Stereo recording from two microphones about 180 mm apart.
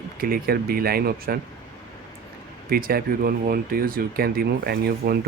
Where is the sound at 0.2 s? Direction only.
55° right (ahead or behind).